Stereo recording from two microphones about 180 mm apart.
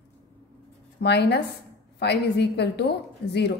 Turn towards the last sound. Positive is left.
turn(degrees=70)  # may be behind; listen again after turning